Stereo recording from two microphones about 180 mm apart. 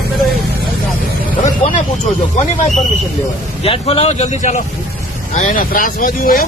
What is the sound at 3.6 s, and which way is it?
Speech, 35° left (ahead or behind).